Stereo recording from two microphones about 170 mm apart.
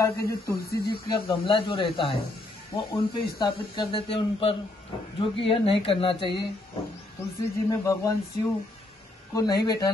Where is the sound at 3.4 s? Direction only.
30° left (ahead or behind).